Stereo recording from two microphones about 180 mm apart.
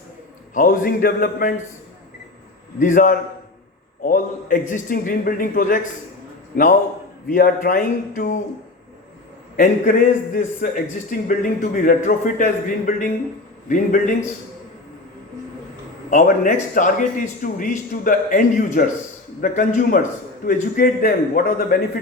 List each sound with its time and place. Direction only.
0.5 s a man's voice: 50° left (ahead or behind)
2.7 s a man's voice: 45° left (ahead or behind)
9.6 s a man's voice: 45° left (ahead or behind)
16.0 s a man's voice: 45° left (ahead or behind)